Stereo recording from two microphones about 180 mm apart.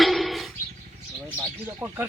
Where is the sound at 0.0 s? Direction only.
Centre (ahead or behind).